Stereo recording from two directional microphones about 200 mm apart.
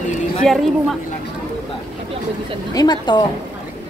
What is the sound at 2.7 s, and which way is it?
Speech, 20° left (ahead or behind).